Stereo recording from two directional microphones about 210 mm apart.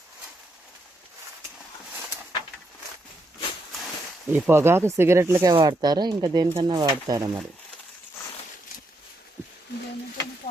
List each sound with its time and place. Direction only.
4.3 s speech: 10° right (ahead or behind)